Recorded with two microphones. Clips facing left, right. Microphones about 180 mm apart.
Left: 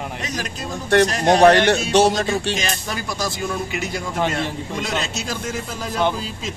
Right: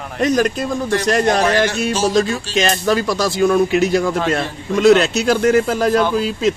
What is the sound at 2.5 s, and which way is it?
A man's voice, 70° right (ahead or behind).